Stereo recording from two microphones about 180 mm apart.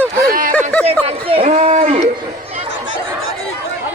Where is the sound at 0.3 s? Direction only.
50° right (ahead or behind).